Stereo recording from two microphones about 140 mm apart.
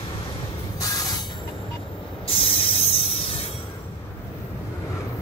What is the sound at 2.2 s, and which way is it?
Spray, 40° left (ahead or behind).